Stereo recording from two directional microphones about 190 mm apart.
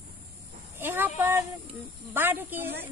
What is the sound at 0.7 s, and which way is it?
Snake, 10° right (ahead or behind).